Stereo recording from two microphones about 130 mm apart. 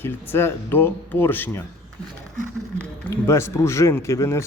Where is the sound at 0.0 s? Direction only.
20° left (ahead or behind).